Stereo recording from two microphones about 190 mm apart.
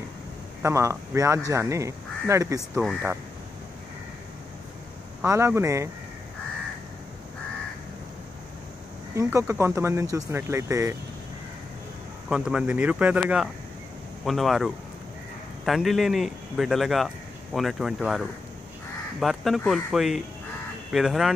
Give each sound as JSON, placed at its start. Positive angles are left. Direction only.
{"t": 0.6, "sound": "speech", "side_deg": -15}
{"t": 2.8, "sound": "speech", "side_deg": 0}
{"t": 5.2, "sound": "speech", "side_deg": -15}
{"t": 9.1, "sound": "speech", "side_deg": -15}
{"t": 12.3, "sound": "speech", "side_deg": -5}